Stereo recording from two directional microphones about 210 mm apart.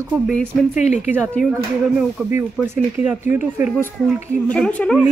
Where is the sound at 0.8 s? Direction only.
35° left (ahead or behind).